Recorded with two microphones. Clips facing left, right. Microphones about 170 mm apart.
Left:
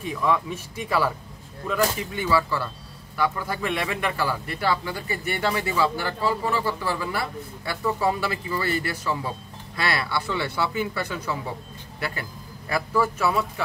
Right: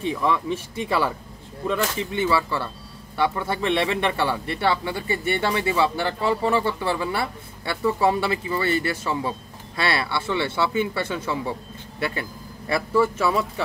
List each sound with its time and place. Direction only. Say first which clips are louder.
0.0 s a man's voice: right 1 dB; 30° right (ahead or behind)